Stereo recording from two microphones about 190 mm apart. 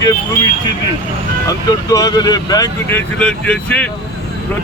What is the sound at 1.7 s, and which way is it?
Speech, 20° left (ahead or behind).